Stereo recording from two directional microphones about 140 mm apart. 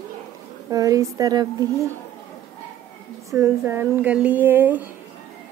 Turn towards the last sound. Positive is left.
turn(degrees=-15)  # may be behind; listen again after turning